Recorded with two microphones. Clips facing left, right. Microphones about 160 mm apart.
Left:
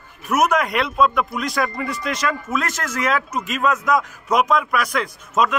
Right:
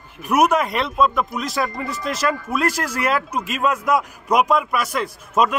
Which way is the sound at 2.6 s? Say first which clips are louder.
Right 5 dB; 35° right (ahead or behind).